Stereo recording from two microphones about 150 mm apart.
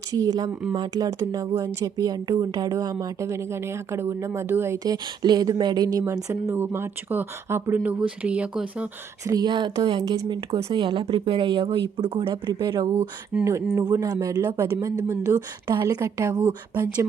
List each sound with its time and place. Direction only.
0.1 s speech: 25° right (ahead or behind); by 8.9 s 10° right (ahead or behind)
9.2 s speech: 25° right (ahead or behind)